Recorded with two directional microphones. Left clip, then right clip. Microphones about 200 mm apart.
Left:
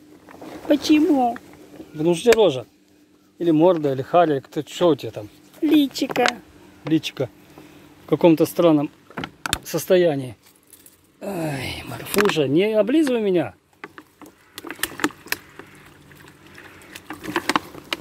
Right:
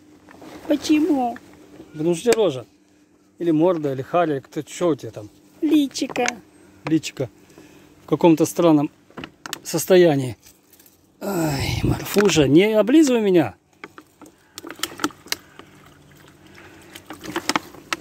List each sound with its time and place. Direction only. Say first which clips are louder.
0.3 s boat: left 3 dB; 25° left (ahead or behind)
0.7 s speech: left 2 dB; 5° left (ahead or behind)
2.0 s speech: left 3 dB; centre (ahead or behind)
6.9 s speech: left 1 dB; 15° right (ahead or behind)
9.1 s a sound: left 7 dB; 40° left (ahead or behind)
9.6 s speech: right 3 dB; 20° right (ahead or behind)
11.1 s groan: right 3 dB; 30° right (ahead or behind)
12.4 s speech: right 3 dB; 35° right (ahead or behind)
13.7 s vehicle: left 1 dB; centre (ahead or behind)
16.9 s rowboat: left 3 dB; centre (ahead or behind)